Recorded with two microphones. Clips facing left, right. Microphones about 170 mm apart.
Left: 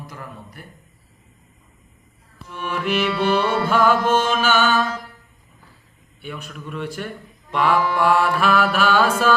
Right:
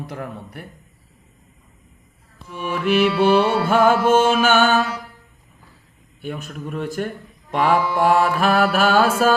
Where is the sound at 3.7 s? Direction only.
50° right (ahead or behind).